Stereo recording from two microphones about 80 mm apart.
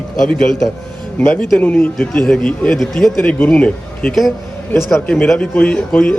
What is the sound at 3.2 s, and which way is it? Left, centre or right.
Speech, centre.